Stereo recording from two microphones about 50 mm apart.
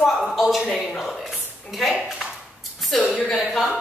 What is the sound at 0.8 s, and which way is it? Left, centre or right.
A woman's voice, centre.